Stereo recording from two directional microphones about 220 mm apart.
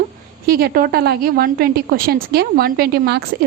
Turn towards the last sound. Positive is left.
turn(degrees=-45)  # may be behind; listen again after turning